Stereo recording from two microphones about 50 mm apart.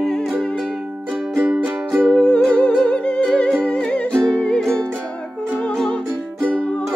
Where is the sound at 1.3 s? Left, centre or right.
Right.